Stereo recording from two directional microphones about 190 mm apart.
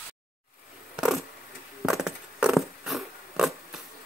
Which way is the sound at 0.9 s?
5° right (ahead or behind).